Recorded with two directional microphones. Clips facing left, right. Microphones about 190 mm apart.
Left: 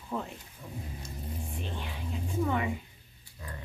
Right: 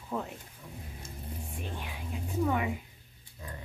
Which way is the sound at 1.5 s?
10° right (ahead or behind).